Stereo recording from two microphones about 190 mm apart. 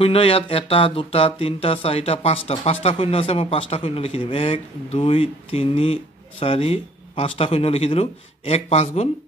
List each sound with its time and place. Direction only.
0.0 s speech: 30° left (ahead or behind)